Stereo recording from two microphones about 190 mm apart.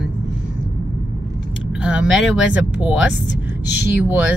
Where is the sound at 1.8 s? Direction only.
5° right (ahead or behind).